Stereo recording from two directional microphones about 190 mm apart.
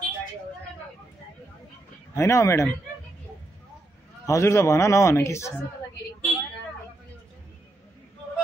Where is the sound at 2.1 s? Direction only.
15° left (ahead or behind).